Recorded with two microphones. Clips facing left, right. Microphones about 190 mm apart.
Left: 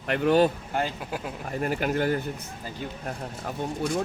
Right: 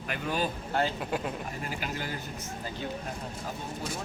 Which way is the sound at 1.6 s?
55° left (ahead or behind).